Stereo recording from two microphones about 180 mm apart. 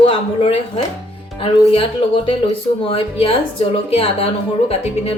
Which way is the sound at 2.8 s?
30° left (ahead or behind).